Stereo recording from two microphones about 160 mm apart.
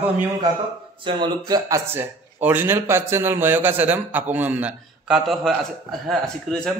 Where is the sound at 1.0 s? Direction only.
25° right (ahead or behind).